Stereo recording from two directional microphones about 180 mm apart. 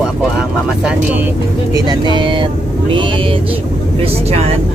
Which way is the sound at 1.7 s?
25° right (ahead or behind).